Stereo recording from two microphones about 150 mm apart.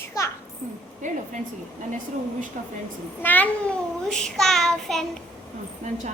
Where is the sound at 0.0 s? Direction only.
20° left (ahead or behind).